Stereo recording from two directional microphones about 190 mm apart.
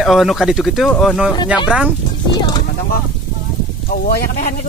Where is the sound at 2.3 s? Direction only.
20° left (ahead or behind).